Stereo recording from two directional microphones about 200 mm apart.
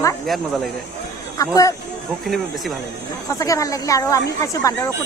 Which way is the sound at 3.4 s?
15° left (ahead or behind).